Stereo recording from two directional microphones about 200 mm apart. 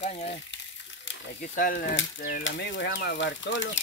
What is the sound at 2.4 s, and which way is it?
Speech, 65° left (ahead or behind).